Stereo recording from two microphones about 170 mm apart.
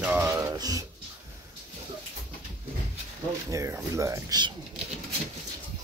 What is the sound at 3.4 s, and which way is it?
Speech, 15° right (ahead or behind).